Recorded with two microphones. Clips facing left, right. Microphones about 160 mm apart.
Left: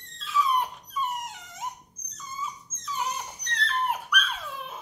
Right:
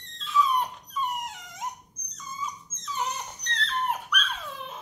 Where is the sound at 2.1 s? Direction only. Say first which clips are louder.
Even; 5° left (ahead or behind).